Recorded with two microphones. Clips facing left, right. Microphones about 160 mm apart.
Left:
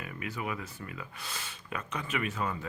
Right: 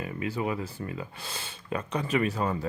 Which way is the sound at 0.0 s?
30° right (ahead or behind).